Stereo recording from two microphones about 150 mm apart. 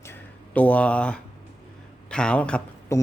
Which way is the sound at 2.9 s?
20° left (ahead or behind).